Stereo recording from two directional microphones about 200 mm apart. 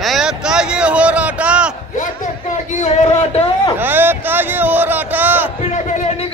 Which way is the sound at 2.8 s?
35° left (ahead or behind).